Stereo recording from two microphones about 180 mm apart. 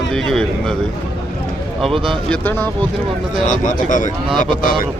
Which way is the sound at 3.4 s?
45° left (ahead or behind).